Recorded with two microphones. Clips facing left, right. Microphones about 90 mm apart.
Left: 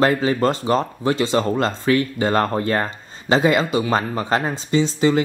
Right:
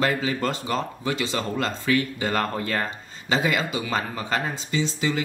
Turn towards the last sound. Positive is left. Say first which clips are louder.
# left 8 dB
turn(degrees=40)  # may be behind; listen again after turning